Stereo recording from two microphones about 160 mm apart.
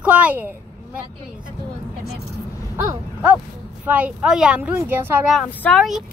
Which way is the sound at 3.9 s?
10° right (ahead or behind).